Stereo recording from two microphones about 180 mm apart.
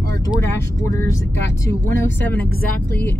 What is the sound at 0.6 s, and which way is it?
Speech, 15° left (ahead or behind).